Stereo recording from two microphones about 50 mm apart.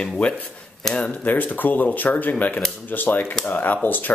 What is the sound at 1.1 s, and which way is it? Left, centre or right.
Speech, left.